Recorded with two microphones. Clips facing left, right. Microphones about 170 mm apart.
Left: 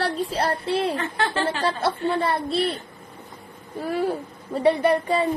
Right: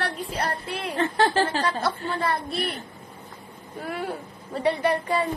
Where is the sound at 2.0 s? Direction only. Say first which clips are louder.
Left 4 dB; 25° left (ahead or behind).